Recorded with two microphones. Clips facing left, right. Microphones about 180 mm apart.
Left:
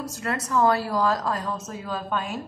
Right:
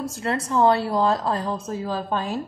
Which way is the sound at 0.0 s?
30° right (ahead or behind).